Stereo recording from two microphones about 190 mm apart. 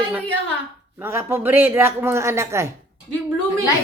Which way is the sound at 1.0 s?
10° right (ahead or behind).